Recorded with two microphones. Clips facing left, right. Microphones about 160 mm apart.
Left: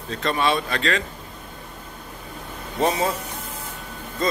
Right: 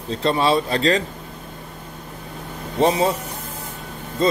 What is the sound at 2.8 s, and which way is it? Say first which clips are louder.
Speech: right 4 dB; 25° right (ahead or behind).